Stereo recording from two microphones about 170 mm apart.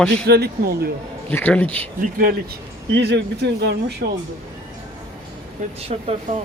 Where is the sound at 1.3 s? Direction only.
10° left (ahead or behind).